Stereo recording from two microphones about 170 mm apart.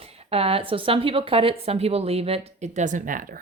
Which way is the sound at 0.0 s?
35° right (ahead or behind).